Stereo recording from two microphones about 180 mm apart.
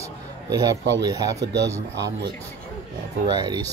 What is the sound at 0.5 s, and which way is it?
Speech, 20° right (ahead or behind).